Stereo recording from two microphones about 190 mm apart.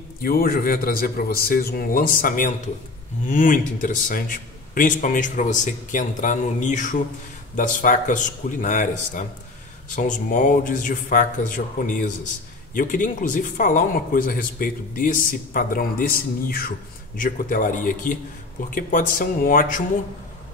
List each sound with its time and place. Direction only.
0.2 s speech: 50° left (ahead or behind)